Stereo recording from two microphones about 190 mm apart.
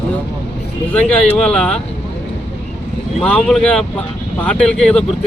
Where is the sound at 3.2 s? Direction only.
5° left (ahead or behind).